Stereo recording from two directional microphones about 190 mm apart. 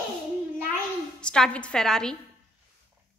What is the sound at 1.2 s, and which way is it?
Speech, 5° left (ahead or behind).